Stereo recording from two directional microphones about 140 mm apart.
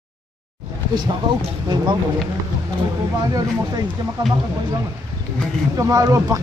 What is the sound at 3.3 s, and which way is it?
Speech, 25° right (ahead or behind).